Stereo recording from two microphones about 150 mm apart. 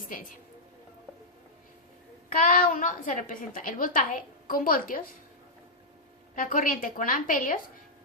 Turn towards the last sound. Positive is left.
turn(degrees=65)  # may be behind; listen again after turning